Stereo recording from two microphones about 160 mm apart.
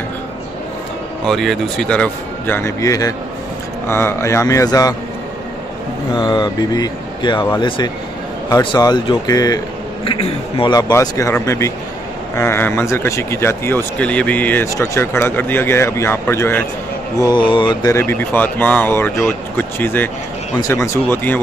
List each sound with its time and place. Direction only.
1.2 s speech: centre (ahead or behind); by 4.9 s 20° left (ahead or behind)
6.1 s speech: 25° left (ahead or behind)
17.2 s speech: 30° left (ahead or behind)
17.9 s speech: 10° left (ahead or behind)